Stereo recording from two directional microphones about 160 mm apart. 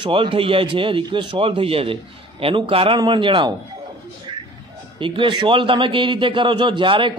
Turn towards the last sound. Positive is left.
turn(degrees=-30)  # may be behind; listen again after turning